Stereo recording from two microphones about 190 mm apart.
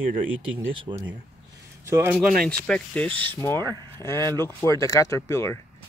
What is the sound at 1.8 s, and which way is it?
Speech, 15° right (ahead or behind).